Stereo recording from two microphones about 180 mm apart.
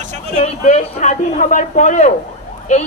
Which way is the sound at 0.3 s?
40° left (ahead or behind).